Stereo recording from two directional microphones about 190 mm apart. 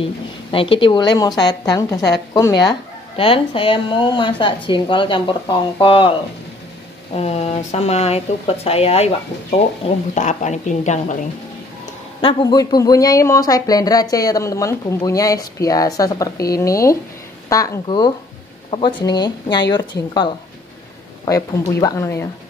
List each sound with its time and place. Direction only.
0.0 s speech: 30° left (ahead or behind)
7.2 s a woman's voice: 35° left (ahead or behind)
10.1 s a woman's voice: 40° left (ahead or behind)
12.2 s speech: 25° left (ahead or behind)
21.3 s speech: 20° left (ahead or behind)